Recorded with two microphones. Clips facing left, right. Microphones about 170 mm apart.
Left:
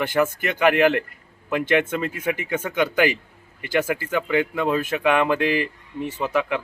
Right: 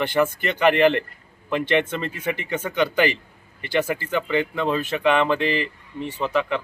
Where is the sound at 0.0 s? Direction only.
10° left (ahead or behind).